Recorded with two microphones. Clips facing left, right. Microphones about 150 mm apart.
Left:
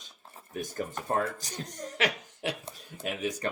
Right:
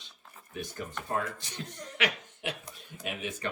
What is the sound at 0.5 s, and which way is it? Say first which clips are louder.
Speech: left 4 dB; 45° left (ahead or behind).